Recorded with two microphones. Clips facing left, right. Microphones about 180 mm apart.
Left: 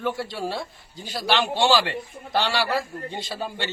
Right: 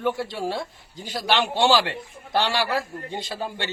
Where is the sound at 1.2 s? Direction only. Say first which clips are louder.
Right 1 dB; 15° right (ahead or behind).